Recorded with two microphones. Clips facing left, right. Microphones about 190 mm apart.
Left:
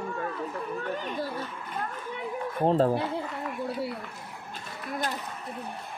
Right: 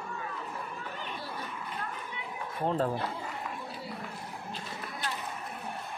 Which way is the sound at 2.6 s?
30° left (ahead or behind).